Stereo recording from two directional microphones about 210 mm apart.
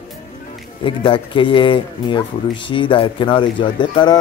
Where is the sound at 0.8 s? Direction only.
25° left (ahead or behind).